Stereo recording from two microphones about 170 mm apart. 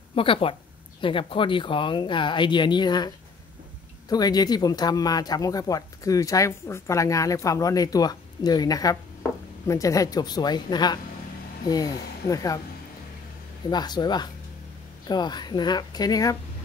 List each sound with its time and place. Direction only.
0.1 s a woman's voice: 30° left (ahead or behind)
4.1 s speech: 25° left (ahead or behind)
13.7 s speech: 25° left (ahead or behind)